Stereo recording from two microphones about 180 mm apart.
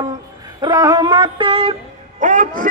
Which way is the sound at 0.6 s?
25° right (ahead or behind).